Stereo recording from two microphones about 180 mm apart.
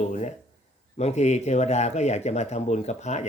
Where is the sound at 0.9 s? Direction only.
40° left (ahead or behind).